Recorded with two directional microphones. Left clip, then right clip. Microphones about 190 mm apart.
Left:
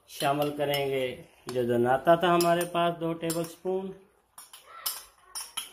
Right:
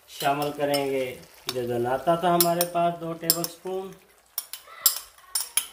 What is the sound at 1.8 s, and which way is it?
Cutlery, 40° left (ahead or behind).